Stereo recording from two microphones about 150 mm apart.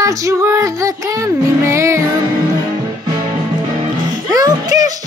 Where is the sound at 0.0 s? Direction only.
20° right (ahead or behind).